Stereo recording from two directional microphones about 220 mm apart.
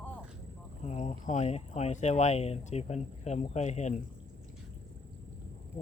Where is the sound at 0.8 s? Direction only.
30° left (ahead or behind).